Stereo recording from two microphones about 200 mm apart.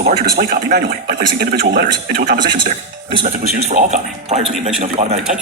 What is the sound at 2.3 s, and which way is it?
Speech, 25° right (ahead or behind).